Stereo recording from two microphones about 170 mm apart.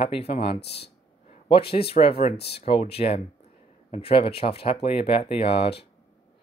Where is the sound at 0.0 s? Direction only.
35° left (ahead or behind).